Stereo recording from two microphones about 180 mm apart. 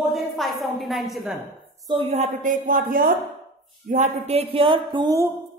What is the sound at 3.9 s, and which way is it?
Speech, 40° right (ahead or behind).